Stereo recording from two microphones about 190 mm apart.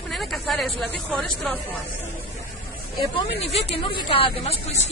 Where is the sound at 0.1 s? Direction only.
Centre (ahead or behind).